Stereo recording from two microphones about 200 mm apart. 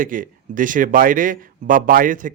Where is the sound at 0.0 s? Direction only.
45° right (ahead or behind).